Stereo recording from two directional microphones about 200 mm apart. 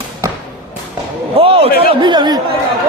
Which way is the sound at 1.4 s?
30° right (ahead or behind).